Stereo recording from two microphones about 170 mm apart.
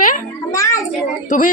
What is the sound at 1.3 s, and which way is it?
Speech, 50° left (ahead or behind).